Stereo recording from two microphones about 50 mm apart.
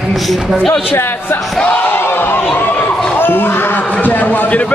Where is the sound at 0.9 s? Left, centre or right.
Left.